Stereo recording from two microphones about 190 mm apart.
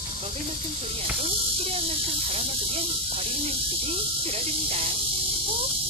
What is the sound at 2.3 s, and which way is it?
Speech, 30° right (ahead or behind).